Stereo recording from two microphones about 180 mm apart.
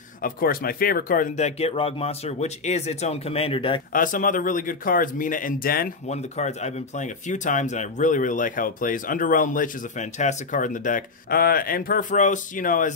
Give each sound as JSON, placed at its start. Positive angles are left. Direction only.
{"t": 0.2, "sound": "speech", "side_deg": 55}
{"t": 3.9, "sound": "speech", "side_deg": 50}
{"t": 6.0, "sound": "speech", "side_deg": 40}